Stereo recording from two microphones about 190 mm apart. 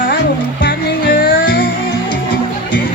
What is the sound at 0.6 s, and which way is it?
Music, 60° left (ahead or behind).